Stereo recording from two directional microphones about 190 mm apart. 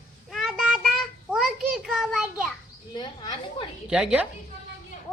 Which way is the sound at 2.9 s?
25° left (ahead or behind).